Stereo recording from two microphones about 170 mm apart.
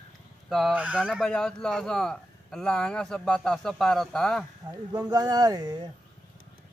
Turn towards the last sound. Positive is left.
turn(degrees=-20)  # may be behind; listen again after turning